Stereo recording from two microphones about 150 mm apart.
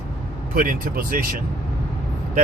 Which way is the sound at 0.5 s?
70° right (ahead or behind).